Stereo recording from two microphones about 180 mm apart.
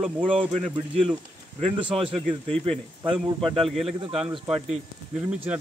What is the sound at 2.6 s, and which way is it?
Speech, 30° right (ahead or behind).